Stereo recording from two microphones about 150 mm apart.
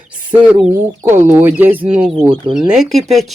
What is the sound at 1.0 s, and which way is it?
Speech, 15° right (ahead or behind).